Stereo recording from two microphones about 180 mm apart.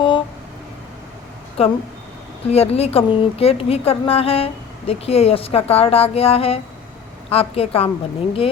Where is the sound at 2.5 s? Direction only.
35° left (ahead or behind).